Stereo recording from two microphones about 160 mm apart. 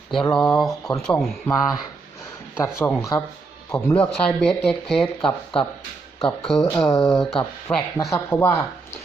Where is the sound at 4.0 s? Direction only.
5° left (ahead or behind).